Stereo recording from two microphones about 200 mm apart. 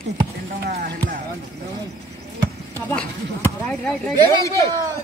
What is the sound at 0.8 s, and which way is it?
Speech, 50° right (ahead or behind).